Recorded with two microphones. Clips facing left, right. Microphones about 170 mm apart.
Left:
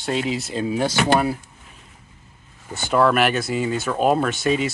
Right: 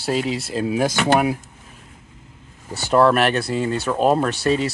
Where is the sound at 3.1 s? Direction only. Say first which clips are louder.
Right 1 dB; centre (ahead or behind).